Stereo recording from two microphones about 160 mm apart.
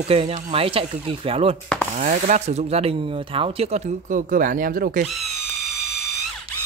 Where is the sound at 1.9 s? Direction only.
50° right (ahead or behind).